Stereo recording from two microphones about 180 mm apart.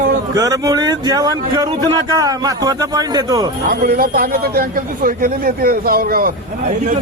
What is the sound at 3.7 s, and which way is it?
A man's voice, 55° right (ahead or behind).